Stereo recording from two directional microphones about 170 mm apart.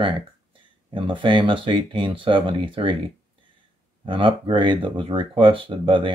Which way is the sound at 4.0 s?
30° right (ahead or behind).